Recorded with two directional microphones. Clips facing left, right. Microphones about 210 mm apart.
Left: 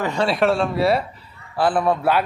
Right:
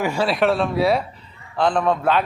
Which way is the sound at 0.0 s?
5° right (ahead or behind).